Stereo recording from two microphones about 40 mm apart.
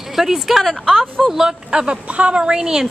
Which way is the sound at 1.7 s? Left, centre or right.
Right.